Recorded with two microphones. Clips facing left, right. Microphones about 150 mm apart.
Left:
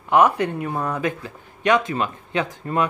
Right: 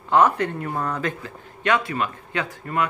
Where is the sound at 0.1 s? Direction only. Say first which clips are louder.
Left 1 dB; 15° left (ahead or behind).